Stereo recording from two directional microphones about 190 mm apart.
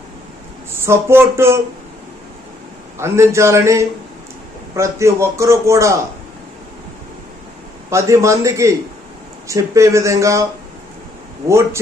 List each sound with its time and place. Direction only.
0.9 s a man's voice: 15° right (ahead or behind)
3.0 s a man's voice: 15° right (ahead or behind)
7.9 s a man's voice: 15° right (ahead or behind)
11.4 s a man's voice: 15° right (ahead or behind)